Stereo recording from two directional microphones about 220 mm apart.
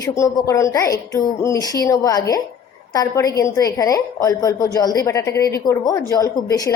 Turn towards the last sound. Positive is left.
turn(degrees=15)  # may be behind; listen again after turning